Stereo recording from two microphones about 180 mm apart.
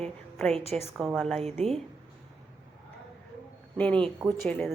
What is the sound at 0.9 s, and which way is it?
Speech, centre (ahead or behind).